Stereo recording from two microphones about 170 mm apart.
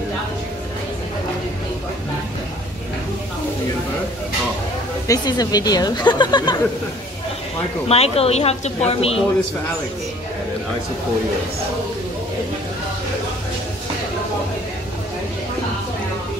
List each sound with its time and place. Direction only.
5.0 s speech: 20° left (ahead or behind)
7.9 s a woman's voice: 35° left (ahead or behind)